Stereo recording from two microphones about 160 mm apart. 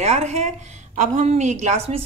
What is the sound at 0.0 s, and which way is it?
A woman's voice, 45° right (ahead or behind).